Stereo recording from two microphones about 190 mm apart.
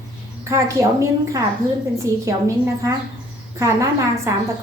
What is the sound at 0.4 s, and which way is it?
Speech, 15° right (ahead or behind).